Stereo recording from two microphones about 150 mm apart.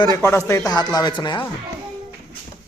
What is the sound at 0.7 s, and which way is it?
Speech, 25° left (ahead or behind).